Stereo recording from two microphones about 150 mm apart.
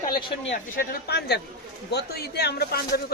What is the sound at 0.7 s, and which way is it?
A man's voice, 85° left.